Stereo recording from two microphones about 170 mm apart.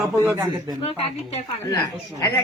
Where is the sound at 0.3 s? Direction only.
20° right (ahead or behind).